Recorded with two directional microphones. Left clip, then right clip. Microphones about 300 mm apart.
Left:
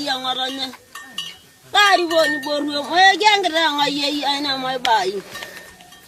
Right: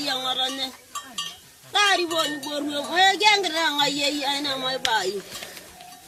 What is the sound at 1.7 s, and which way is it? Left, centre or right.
Speech, centre.